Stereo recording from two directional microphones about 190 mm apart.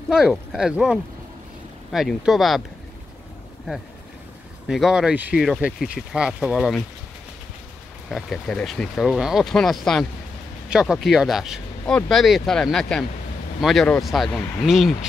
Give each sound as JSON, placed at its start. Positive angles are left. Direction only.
{"t": 0.1, "sound": "speech", "side_deg": 0}
{"t": 4.6, "sound": "speech", "side_deg": 0}
{"t": 8.1, "sound": "speech", "side_deg": 5}